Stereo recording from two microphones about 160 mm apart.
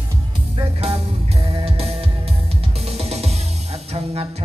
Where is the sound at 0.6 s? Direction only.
40° right (ahead or behind).